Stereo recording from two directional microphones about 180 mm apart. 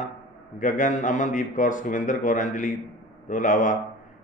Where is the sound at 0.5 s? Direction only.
45° left (ahead or behind).